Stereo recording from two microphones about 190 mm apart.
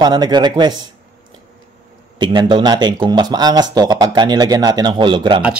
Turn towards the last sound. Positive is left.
turn(degrees=-25)  # may be behind; listen again after turning